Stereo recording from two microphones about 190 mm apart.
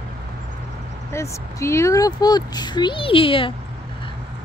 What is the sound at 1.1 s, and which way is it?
Speech, 15° left (ahead or behind).